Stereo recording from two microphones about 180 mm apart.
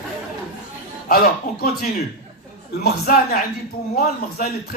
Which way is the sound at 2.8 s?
50° left (ahead or behind).